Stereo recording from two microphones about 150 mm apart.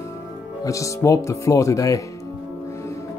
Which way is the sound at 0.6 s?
20° left (ahead or behind).